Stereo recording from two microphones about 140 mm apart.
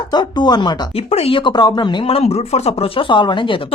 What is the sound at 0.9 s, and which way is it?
Speech, 45° left (ahead or behind).